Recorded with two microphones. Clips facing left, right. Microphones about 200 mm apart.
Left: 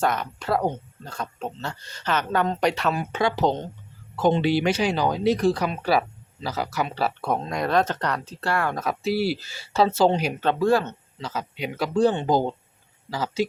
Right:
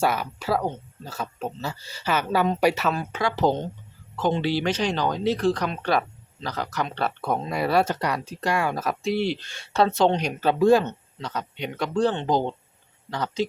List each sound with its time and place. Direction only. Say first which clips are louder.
0.0 s speech: right 1 dB; 5° right (ahead or behind)
3.1 s speech: even; 25° left (ahead or behind); by 10.3 s 5° left (ahead or behind)
10.6 s speech: right 4 dB; 20° right (ahead or behind)
11.2 s speech: left 1 dB; 5° left (ahead or behind)